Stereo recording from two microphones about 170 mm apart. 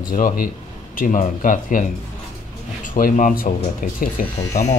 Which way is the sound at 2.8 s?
50° left (ahead or behind).